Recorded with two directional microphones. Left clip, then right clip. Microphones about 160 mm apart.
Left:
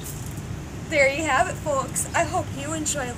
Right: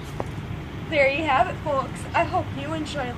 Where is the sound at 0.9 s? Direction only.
15° left (ahead or behind).